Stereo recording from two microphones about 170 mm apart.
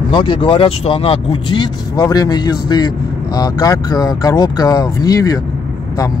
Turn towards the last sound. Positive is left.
turn(degrees=20)  # may be behind; listen again after turning